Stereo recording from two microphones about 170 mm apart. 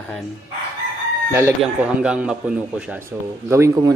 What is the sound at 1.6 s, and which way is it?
A man's voice, 5° right (ahead or behind).